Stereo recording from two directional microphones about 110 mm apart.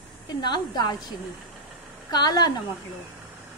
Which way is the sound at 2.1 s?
40° left (ahead or behind).